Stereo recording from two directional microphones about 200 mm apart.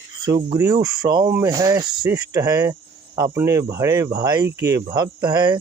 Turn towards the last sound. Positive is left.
turn(degrees=-20)  # may be behind; listen again after turning